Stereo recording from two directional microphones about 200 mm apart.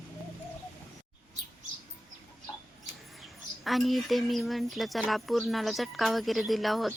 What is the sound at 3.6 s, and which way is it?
Speech, centre (ahead or behind).